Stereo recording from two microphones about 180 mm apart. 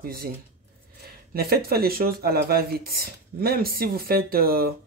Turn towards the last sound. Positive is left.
turn(degrees=-55)  # may be behind; listen again after turning